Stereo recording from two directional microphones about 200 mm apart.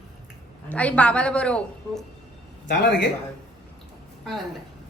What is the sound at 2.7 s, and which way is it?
Speech, 55° left (ahead or behind).